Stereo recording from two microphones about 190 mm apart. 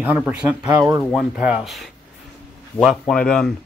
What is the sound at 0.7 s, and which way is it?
Speech, 15° right (ahead or behind).